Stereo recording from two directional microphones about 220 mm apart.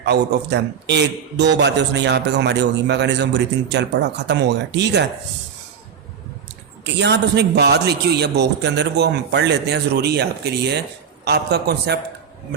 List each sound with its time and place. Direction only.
0.0 s a man's voice: 50° right (ahead or behind)
6.8 s a man's voice: 50° right (ahead or behind)